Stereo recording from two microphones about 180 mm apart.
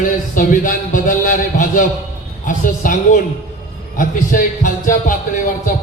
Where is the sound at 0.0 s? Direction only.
50° left (ahead or behind).